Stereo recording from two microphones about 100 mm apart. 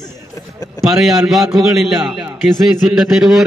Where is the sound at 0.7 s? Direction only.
Centre (ahead or behind).